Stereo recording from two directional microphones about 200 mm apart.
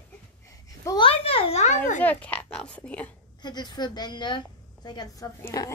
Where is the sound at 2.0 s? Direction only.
5° left (ahead or behind).